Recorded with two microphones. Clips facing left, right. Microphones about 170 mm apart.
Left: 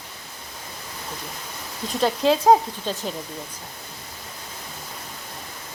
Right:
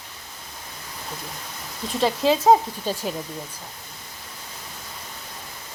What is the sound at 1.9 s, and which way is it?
Speech, centre (ahead or behind).